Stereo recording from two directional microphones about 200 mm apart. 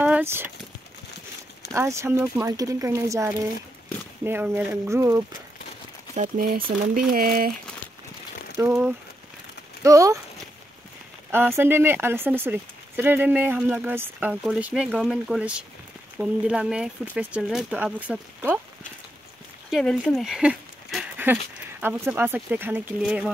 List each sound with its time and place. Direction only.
0.0 s a sound: 10° right (ahead or behind)
1.7 s speech: 15° right (ahead or behind)
6.1 s speech: 40° right (ahead or behind)
8.5 s speech: 15° right (ahead or behind)
11.5 s speech: 10° right (ahead or behind)
19.7 s speech: centre (ahead or behind)